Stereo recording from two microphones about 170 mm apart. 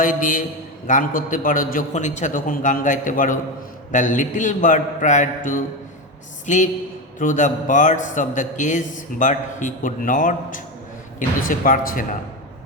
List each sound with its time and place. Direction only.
0.0 s a man's voice: 50° left (ahead or behind)